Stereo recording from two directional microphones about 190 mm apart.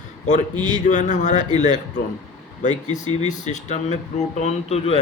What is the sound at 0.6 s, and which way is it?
Speech, 40° left (ahead or behind).